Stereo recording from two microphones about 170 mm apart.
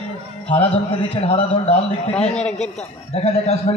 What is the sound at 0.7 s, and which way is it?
A man's voice, 35° left (ahead or behind).